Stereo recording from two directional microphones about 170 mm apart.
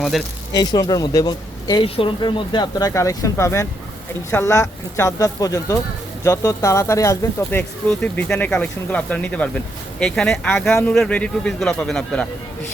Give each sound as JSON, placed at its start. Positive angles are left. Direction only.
{"t": 0.0, "sound": "speech", "side_deg": 0}
{"t": 0.5, "sound": "speech", "side_deg": 25}